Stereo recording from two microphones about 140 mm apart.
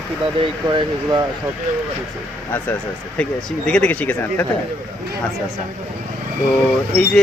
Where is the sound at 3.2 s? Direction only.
5° left (ahead or behind).